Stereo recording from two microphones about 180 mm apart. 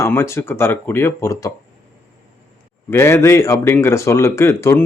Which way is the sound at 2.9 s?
15° left (ahead or behind).